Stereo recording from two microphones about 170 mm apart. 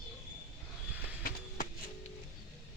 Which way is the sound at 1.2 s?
60° left (ahead or behind).